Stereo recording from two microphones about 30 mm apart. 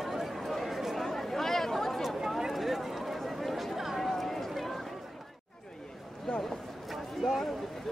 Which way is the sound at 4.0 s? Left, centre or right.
Centre.